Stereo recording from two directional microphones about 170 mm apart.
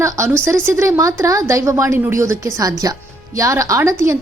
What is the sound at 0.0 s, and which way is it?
A woman's voice, 15° right (ahead or behind).